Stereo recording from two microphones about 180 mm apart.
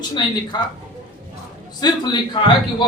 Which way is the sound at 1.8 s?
25° left (ahead or behind).